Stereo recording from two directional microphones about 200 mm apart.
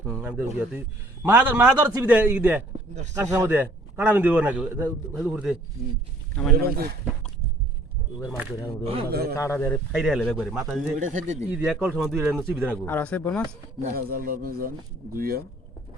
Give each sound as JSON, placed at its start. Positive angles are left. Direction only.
{"t": 0.1, "sound": "a man's voice", "side_deg": -10}
{"t": 2.9, "sound": "a man's voice", "side_deg": -35}
{"t": 3.2, "sound": "a man's voice", "side_deg": -15}
{"t": 6.6, "sound": "speech", "side_deg": -50}
{"t": 8.8, "sound": "a man's voice", "side_deg": -30}
{"t": 9.0, "sound": "speech", "side_deg": -50}
{"t": 9.4, "sound": "speech", "side_deg": 10}
{"t": 9.9, "sound": "speech", "side_deg": 0}
{"t": 11.0, "sound": "a man's voice", "side_deg": -40}
{"t": 11.5, "sound": "a man's voice", "side_deg": -5}
{"t": 12.8, "sound": "speech", "side_deg": 10}
{"t": 13.8, "sound": "speech", "side_deg": -45}